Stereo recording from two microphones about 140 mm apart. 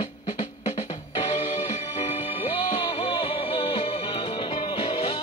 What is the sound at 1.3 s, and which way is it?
Music, 60° left (ahead or behind).